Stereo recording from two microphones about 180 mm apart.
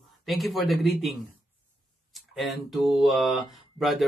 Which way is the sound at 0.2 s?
Centre (ahead or behind).